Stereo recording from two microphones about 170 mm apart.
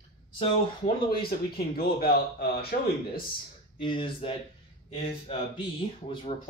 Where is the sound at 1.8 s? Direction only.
65° left (ahead or behind).